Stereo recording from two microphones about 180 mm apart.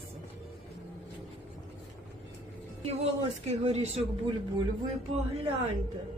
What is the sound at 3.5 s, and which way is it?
Speech, 35° right (ahead or behind).